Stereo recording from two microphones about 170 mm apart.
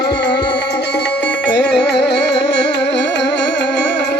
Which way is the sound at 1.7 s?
85° left.